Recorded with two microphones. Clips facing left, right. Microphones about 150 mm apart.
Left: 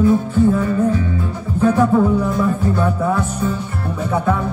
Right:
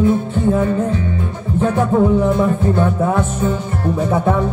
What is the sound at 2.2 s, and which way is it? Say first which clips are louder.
Music: right 3 dB; 25° right (ahead or behind).